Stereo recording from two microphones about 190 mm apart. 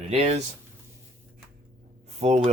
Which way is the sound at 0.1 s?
35° right (ahead or behind).